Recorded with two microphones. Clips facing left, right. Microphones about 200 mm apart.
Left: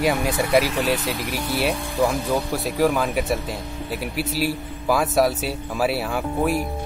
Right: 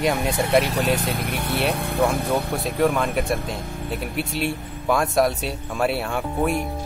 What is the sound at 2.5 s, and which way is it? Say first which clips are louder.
Speech: even; centre (ahead or behind).